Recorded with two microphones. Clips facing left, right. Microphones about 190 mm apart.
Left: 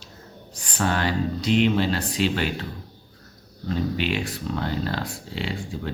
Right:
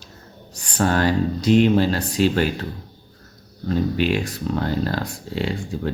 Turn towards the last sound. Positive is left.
turn(degrees=-45)  # may be behind; listen again after turning